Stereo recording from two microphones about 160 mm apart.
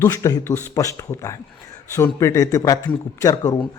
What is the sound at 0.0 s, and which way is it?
Speech, 20° left (ahead or behind).